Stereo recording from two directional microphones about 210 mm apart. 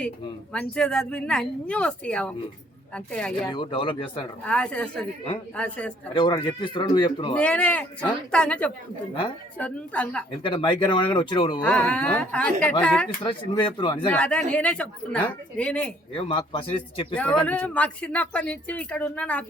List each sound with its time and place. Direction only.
0.5 s speech: 5° left (ahead or behind)
3.5 s speech: 20° left (ahead or behind)
4.4 s speech: 5° left (ahead or behind)
6.1 s speech: 20° left (ahead or behind)
7.3 s a woman's voice: 5° left (ahead or behind)
10.4 s speech: 25° left (ahead or behind)
11.6 s a woman's voice: 5° left (ahead or behind)
13.2 s speech: 20° left (ahead or behind)
14.1 s speech: 5° left (ahead or behind)
16.1 s speech: 25° left (ahead or behind)
17.2 s a woman's voice: 5° left (ahead or behind)